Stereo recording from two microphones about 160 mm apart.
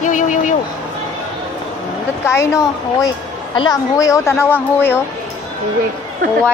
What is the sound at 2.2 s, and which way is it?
A woman's voice, 20° left (ahead or behind).